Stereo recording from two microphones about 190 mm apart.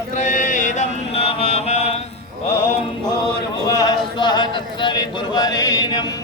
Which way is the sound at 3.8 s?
20° left (ahead or behind).